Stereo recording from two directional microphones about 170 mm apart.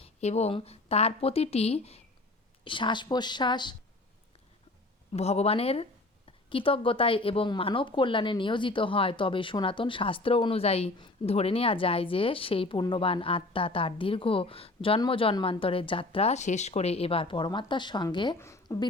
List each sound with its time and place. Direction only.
0.0 s speech: 40° left (ahead or behind)
5.1 s a woman's voice: 40° left (ahead or behind); by 18.9 s 15° left (ahead or behind)